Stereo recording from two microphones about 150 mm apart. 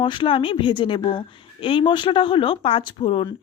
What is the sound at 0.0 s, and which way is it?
A woman's voice, 35° left (ahead or behind).